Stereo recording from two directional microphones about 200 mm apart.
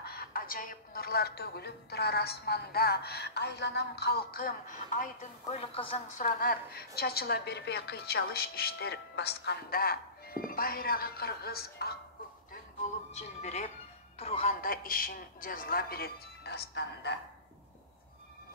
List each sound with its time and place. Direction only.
0.0 s speech: 50° left (ahead or behind); by 6.2 s 30° left (ahead or behind)
6.2 s speech: 45° left (ahead or behind)
13.1 s speech: 35° left (ahead or behind)
14.6 s speech: 45° left (ahead or behind)